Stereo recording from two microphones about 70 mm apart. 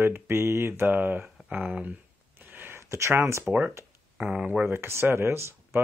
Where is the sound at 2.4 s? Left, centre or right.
Right.